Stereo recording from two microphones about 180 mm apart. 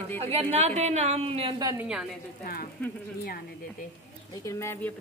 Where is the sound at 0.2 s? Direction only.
35° right (ahead or behind).